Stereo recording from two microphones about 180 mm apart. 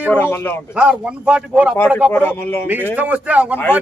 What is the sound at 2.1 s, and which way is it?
Speech, 10° left (ahead or behind).